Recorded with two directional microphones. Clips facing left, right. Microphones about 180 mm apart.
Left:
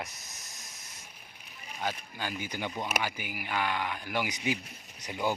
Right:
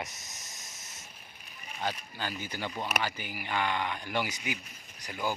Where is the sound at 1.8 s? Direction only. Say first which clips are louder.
Even; 10° left (ahead or behind).